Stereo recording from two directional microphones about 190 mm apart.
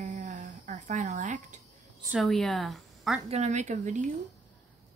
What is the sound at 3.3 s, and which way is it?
Speech, 35° right (ahead or behind).